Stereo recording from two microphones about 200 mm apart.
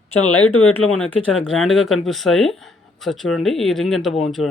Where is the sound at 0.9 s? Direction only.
5° left (ahead or behind).